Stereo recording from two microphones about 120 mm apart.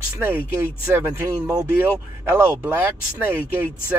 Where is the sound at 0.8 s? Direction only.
15° right (ahead or behind).